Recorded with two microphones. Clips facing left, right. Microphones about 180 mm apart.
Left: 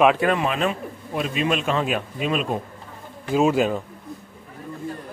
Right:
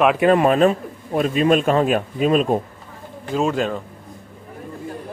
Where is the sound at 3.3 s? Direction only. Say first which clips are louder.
Left 2 dB; 5° left (ahead or behind).